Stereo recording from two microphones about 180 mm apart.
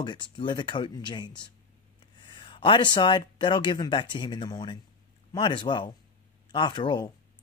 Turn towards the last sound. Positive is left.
turn(degrees=25)  # may be behind; listen again after turning